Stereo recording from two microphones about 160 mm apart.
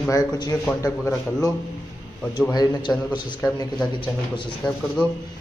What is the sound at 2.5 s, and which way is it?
Speech, 25° left (ahead or behind).